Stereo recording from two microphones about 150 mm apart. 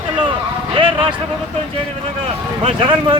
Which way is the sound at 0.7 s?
35° right (ahead or behind).